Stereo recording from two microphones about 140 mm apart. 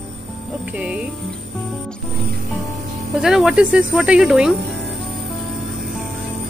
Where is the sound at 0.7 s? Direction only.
10° right (ahead or behind).